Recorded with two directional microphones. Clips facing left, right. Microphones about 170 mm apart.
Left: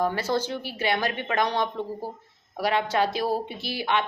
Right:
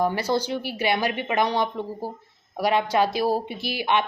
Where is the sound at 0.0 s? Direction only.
15° right (ahead or behind).